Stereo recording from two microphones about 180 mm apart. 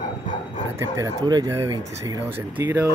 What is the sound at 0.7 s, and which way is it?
Speech, 20° right (ahead or behind).